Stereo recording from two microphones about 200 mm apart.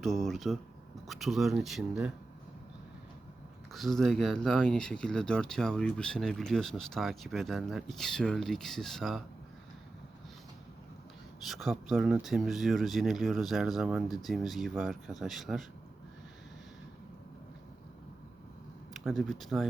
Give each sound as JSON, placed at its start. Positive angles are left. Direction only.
{"t": 0.0, "sound": "speech", "side_deg": 0}
{"t": 3.7, "sound": "speech", "side_deg": 0}
{"t": 11.4, "sound": "speech", "side_deg": 0}
{"t": 18.9, "sound": "speech", "side_deg": 0}